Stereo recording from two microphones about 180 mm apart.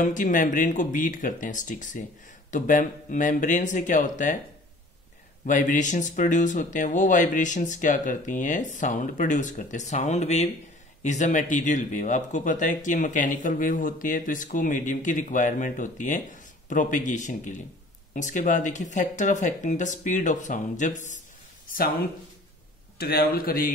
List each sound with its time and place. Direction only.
0.0 s speech: 45° left (ahead or behind)
5.4 s speech: 45° left (ahead or behind)
22.9 s a man's voice: 60° left (ahead or behind)